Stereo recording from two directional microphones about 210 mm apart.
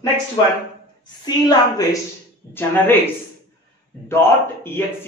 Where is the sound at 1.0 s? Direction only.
20° left (ahead or behind).